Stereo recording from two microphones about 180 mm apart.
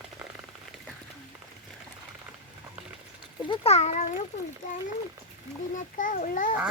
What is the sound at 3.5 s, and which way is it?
Speech, 35° left (ahead or behind).